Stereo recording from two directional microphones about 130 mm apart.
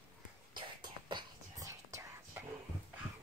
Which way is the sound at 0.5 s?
35° right (ahead or behind).